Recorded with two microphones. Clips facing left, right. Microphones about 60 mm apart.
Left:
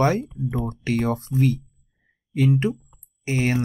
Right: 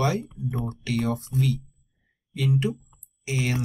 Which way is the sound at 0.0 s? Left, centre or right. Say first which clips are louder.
Left 5 dB; left.